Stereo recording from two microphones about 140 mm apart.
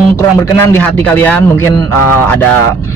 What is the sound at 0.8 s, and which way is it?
A man's voice, 10° left (ahead or behind).